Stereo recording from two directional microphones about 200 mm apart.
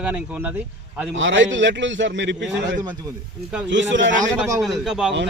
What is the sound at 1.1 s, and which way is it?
A man's voice, 70° right (ahead or behind).